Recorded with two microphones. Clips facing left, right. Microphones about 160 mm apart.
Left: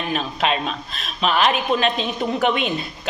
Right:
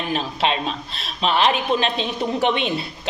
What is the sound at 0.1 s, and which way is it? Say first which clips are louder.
A man's voice: even; 30° right (ahead or behind).